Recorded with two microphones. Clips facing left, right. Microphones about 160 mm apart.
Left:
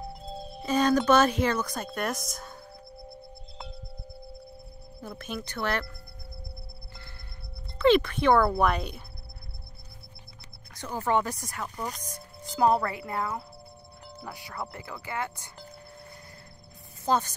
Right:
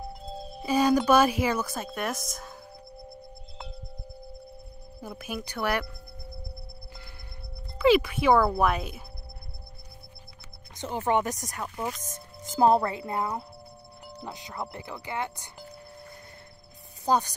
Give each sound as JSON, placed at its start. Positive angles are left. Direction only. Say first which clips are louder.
{"t": 0.3, "sound": "speech", "louder": "right 1 dB", "side_deg": 0}
{"t": 5.0, "sound": "speech", "louder": "right 1 dB", "side_deg": -10}
{"t": 7.8, "sound": "speech", "louder": "even", "side_deg": -10}
{"t": 10.7, "sound": "speech", "louder": "right 1 dB", "side_deg": -20}
{"t": 12.1, "sound": "speech", "louder": "even", "side_deg": -25}
{"t": 17.0, "sound": "speech", "louder": "right 1 dB", "side_deg": -15}